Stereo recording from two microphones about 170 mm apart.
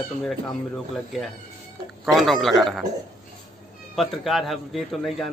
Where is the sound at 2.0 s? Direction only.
Centre (ahead or behind).